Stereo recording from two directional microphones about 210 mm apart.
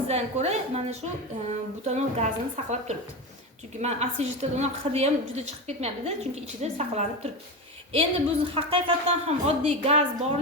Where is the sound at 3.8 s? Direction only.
30° right (ahead or behind).